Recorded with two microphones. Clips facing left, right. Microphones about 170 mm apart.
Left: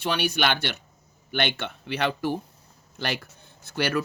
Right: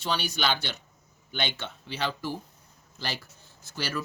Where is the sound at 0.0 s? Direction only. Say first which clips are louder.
Left 4 dB; 60° left (ahead or behind).